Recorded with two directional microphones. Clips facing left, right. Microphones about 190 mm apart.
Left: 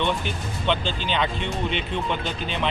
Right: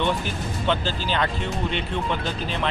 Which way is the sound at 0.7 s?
5° right (ahead or behind).